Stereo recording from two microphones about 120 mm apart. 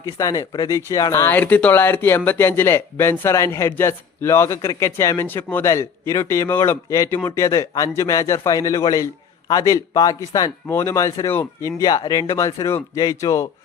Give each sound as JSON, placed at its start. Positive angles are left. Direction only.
{"t": 0.0, "sound": "speech", "side_deg": 30}